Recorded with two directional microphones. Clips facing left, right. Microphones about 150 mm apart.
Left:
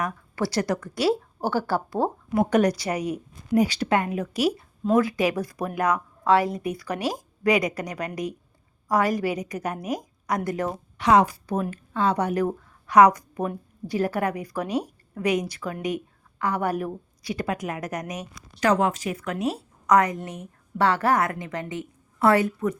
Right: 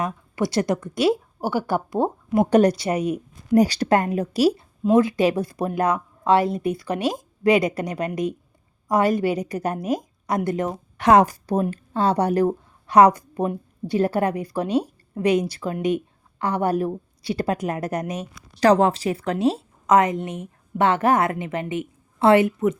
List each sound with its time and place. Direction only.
0.0 s a woman's voice: 20° right (ahead or behind)
3.5 s a woman's voice: 40° right (ahead or behind); by 10.7 s 25° right (ahead or behind)
10.9 s a woman's voice: 50° right (ahead or behind); by 22.8 s 20° right (ahead or behind)